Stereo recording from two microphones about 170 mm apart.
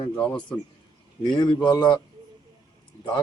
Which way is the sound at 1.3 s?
25° left (ahead or behind).